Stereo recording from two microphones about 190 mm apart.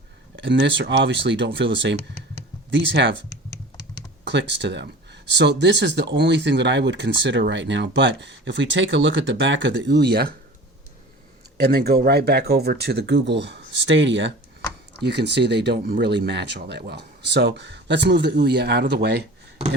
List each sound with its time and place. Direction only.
0.3 s speech: 70° right (ahead or behind)
4.3 s speech: 70° right (ahead or behind)
11.5 s speech: 55° right (ahead or behind); by 14.3 s 75° right (ahead or behind)
15.0 s speech: 60° right (ahead or behind)